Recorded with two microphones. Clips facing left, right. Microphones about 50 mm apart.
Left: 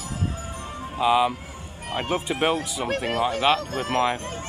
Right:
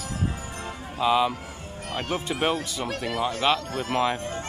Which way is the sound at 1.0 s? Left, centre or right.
Centre.